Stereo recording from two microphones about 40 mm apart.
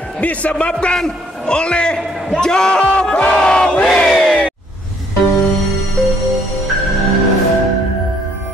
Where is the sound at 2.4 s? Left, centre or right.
Centre.